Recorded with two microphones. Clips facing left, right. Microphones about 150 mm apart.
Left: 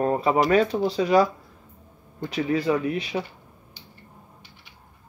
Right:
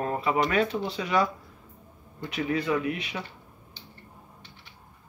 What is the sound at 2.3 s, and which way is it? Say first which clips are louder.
Speech: left 4 dB; 35° left (ahead or behind).